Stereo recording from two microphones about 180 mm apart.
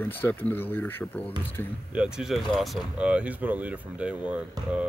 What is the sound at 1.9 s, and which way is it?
Speech, 5° right (ahead or behind).